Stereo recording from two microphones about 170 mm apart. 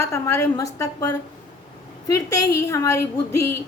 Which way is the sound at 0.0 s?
15° left (ahead or behind).